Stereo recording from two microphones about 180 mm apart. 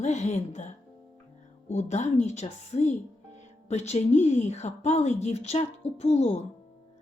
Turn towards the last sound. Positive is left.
turn(degrees=35)  # may be behind; listen again after turning